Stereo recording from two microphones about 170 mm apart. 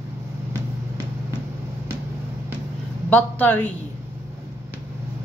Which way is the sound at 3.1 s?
10° left (ahead or behind).